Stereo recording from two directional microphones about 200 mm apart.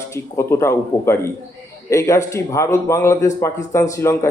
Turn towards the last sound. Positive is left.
turn(degrees=15)  # may be behind; listen again after turning